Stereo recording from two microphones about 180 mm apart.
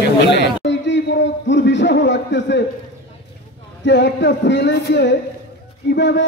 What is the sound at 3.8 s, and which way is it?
A man's voice, 80° left.